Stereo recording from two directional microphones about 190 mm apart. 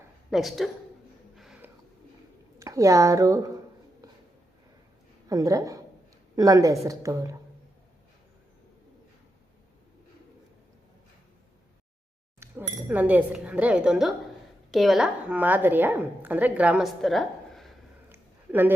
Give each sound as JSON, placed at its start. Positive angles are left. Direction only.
{"t": 0.3, "sound": "a woman's voice", "side_deg": 0}
{"t": 1.4, "sound": "a sound", "side_deg": -5}
{"t": 2.6, "sound": "speech", "side_deg": -15}
{"t": 5.3, "sound": "speech", "side_deg": -15}
{"t": 12.4, "sound": "a woman's voice", "side_deg": -10}